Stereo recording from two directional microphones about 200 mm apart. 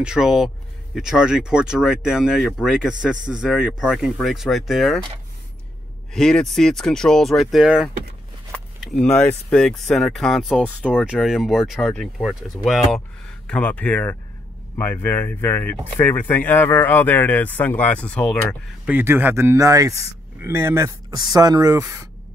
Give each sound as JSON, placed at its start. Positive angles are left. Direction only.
{"t": 0.0, "sound": "speech", "side_deg": -5}
{"t": 6.1, "sound": "speech", "side_deg": 5}
{"t": 18.9, "sound": "speech", "side_deg": -10}